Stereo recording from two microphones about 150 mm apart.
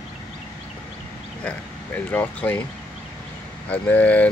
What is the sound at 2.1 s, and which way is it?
Speech, 10° left (ahead or behind).